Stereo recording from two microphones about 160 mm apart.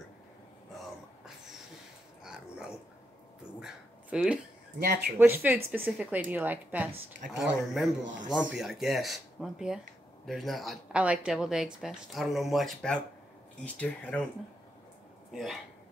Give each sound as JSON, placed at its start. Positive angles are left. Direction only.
{"t": 2.2, "sound": "dog", "side_deg": -5}
{"t": 4.7, "sound": "speech", "side_deg": -80}
{"t": 5.2, "sound": "a woman's voice", "side_deg": -10}
{"t": 15.3, "sound": "a woman's voice", "side_deg": 0}